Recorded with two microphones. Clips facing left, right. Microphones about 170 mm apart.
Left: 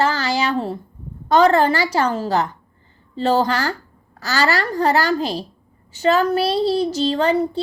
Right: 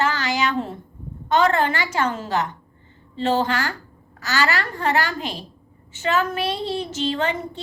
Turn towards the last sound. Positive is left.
turn(degrees=35)  # may be behind; listen again after turning